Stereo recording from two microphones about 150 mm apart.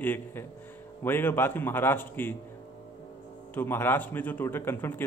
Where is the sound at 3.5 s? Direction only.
15° left (ahead or behind).